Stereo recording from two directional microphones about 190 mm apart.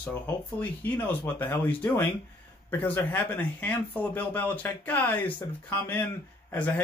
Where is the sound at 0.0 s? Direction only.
10° left (ahead or behind).